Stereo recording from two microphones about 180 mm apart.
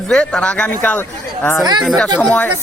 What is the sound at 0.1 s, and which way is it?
A woman's voice, 5° left (ahead or behind).